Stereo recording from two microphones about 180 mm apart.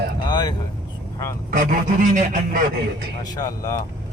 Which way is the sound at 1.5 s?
50° right (ahead or behind).